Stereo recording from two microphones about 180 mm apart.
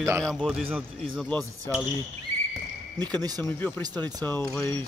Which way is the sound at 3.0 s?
20° right (ahead or behind).